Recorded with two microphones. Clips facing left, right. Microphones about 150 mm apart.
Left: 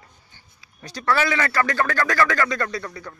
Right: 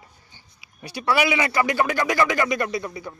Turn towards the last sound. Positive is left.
turn(degrees=-15)  # may be behind; listen again after turning